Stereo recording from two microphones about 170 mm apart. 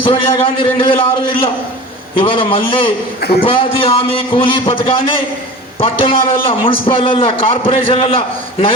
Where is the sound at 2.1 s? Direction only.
30° left (ahead or behind).